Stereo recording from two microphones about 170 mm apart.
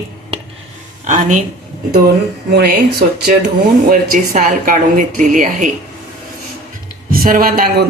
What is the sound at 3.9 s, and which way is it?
Speech, 50° right (ahead or behind).